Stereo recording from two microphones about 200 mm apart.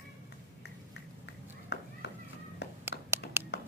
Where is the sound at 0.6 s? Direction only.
60° left (ahead or behind).